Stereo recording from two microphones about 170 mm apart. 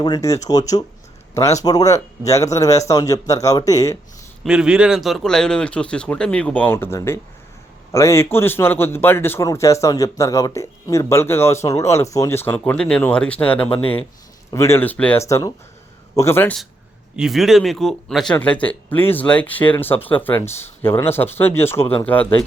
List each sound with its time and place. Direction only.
0.0 s a man's voice: 20° left (ahead or behind)
4.4 s a man's voice: 5° right (ahead or behind)
13.7 s speech: 30° left (ahead or behind)
14.5 s a man's voice: 15° left (ahead or behind)
17.2 s a man's voice: centre (ahead or behind)